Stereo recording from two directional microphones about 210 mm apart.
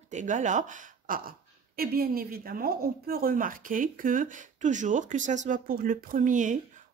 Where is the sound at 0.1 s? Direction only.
35° right (ahead or behind).